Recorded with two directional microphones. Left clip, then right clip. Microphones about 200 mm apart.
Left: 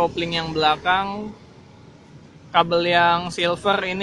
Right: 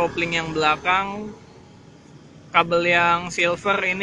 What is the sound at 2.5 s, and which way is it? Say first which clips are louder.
Speech: even; 5° left (ahead or behind).